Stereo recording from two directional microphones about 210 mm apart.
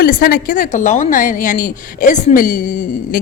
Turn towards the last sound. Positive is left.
turn(degrees=40)  # may be behind; listen again after turning